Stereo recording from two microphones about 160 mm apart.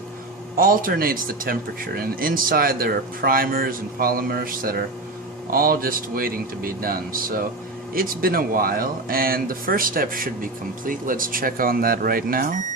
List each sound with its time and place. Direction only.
0.5 s speech: 60° right (ahead or behind)